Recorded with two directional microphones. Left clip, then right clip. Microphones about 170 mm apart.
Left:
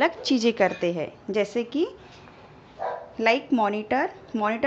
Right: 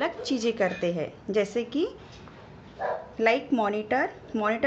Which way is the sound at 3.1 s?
30° left (ahead or behind).